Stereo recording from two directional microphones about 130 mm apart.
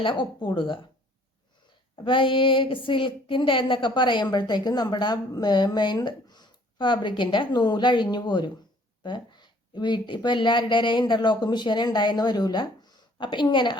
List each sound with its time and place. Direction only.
0.0 s speech: 40° left (ahead or behind)
2.0 s speech: 40° left (ahead or behind)